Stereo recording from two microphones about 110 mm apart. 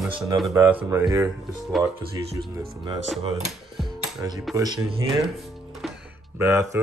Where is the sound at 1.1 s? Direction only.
35° right (ahead or behind).